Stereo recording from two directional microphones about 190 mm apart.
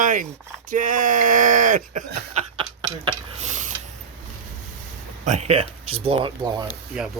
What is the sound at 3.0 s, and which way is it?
Stir, 35° right (ahead or behind).